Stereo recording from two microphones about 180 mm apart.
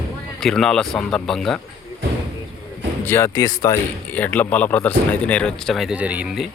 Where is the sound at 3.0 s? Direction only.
15° left (ahead or behind); by 6.4 s 5° right (ahead or behind).